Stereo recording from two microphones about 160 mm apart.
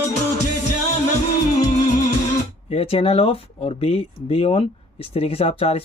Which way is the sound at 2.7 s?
40° left (ahead or behind).